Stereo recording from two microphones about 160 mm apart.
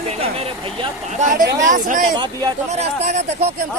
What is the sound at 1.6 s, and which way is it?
Speech, 55° right (ahead or behind).